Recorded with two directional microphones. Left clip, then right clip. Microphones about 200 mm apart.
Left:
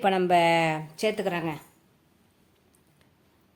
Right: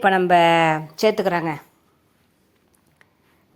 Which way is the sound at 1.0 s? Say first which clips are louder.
Right 9 dB; 30° right (ahead or behind).